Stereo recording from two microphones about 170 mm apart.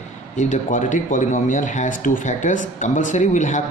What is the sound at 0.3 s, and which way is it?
Speech, 45° left (ahead or behind).